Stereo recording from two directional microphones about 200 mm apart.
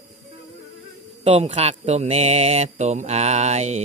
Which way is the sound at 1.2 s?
30° right (ahead or behind).